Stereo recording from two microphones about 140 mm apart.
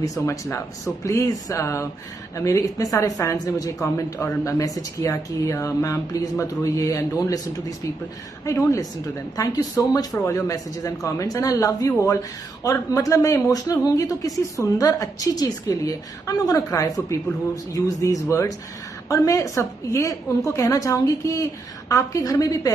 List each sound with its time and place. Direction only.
0.2 s a woman's voice: 20° left (ahead or behind)